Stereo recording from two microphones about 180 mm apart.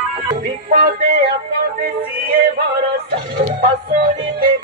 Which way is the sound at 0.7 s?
50° right (ahead or behind).